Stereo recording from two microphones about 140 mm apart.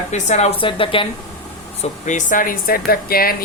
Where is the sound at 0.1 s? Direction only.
55° left (ahead or behind).